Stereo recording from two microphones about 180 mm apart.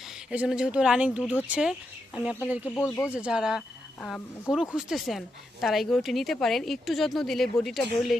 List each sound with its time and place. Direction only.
0.3 s a woman's voice: 5° right (ahead or behind)
2.6 s speech: 10° left (ahead or behind)
3.1 s a woman's voice: 5° right (ahead or behind)